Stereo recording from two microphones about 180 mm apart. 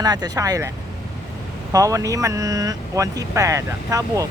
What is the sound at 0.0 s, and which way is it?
Speech, 20° right (ahead or behind).